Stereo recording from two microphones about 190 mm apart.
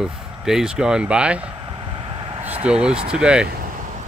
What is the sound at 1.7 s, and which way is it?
Vehicle, 25° right (ahead or behind).